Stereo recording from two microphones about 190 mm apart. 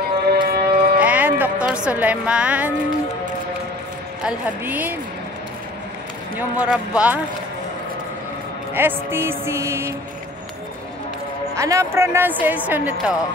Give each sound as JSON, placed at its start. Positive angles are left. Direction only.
{"t": 0.3, "sound": "a sound", "side_deg": -55}
{"t": 1.0, "sound": "music", "side_deg": -10}
{"t": 1.9, "sound": "a woman's voice", "side_deg": -5}
{"t": 4.2, "sound": "a woman's voice", "side_deg": -5}
{"t": 6.3, "sound": "speech", "side_deg": -5}
{"t": 8.7, "sound": "a woman's voice", "side_deg": -10}
{"t": 11.5, "sound": "a woman's voice", "side_deg": -15}